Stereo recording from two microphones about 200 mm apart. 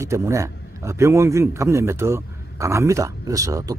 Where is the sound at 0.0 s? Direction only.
15° right (ahead or behind).